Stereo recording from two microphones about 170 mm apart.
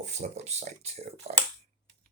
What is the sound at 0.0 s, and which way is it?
Speech, 40° right (ahead or behind).